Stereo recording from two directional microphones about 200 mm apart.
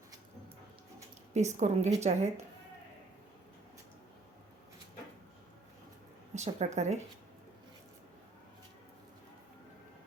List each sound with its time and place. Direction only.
1.3 s a woman's voice: 35° right (ahead or behind)
6.3 s speech: 35° right (ahead or behind)